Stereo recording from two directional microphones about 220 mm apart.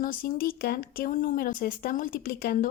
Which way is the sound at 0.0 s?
40° left (ahead or behind).